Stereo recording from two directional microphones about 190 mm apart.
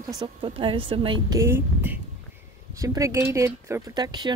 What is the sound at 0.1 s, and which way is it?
Speech, 25° right (ahead or behind).